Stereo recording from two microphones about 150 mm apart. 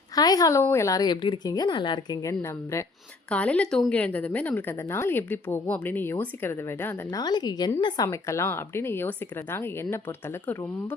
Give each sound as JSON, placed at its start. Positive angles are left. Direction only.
{"t": 0.2, "sound": "a woman's voice", "side_deg": 25}
{"t": 3.2, "sound": "a woman's voice", "side_deg": 10}
{"t": 7.2, "sound": "a woman's voice", "side_deg": 25}